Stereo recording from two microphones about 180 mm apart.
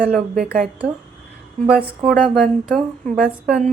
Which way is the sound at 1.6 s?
5° right (ahead or behind).